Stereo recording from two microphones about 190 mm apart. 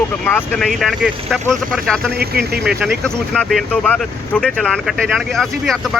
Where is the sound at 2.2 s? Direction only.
55° right (ahead or behind).